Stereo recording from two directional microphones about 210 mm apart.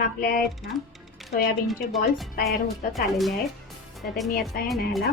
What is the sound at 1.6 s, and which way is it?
Speech, centre (ahead or behind).